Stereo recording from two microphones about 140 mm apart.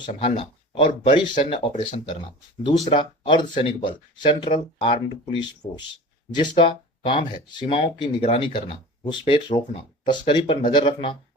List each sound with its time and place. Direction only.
0.0 s speech: 40° left (ahead or behind)
1.7 s speech: 60° left (ahead or behind)
2.9 s speech: 35° left (ahead or behind)
6.3 s speech: 35° left (ahead or behind)